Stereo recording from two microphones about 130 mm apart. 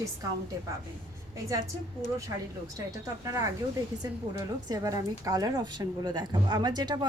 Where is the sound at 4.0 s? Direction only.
30° right (ahead or behind).